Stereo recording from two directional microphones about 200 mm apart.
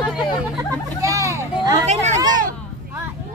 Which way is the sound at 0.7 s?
15° right (ahead or behind).